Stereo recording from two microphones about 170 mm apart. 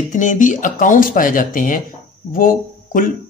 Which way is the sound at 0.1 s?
50° left (ahead or behind).